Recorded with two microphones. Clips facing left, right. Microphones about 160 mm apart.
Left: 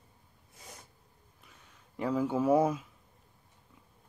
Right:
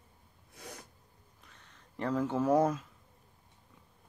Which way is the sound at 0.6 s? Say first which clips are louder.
Right 5 dB; 65° right (ahead or behind).